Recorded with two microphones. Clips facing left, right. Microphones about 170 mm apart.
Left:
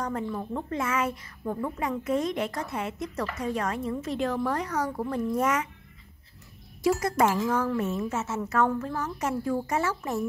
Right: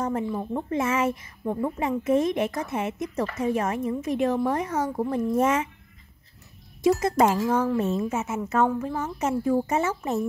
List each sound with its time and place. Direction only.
0.0 s a woman's voice: 20° right (ahead or behind)
6.8 s a woman's voice: 25° right (ahead or behind)